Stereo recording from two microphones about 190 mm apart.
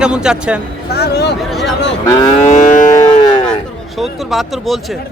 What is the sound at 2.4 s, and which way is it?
Livestock, 40° left (ahead or behind).